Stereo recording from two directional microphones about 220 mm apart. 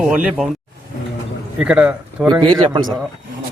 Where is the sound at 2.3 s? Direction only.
20° right (ahead or behind).